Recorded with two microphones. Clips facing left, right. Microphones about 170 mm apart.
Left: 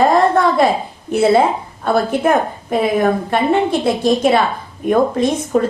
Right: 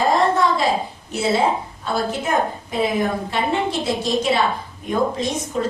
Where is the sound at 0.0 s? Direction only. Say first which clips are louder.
Left 5 dB; 55° left (ahead or behind).